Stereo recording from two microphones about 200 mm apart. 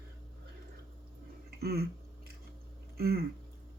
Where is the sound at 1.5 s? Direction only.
50° right (ahead or behind).